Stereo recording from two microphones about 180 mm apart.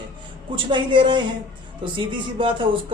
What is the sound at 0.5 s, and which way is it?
Speech, 25° right (ahead or behind).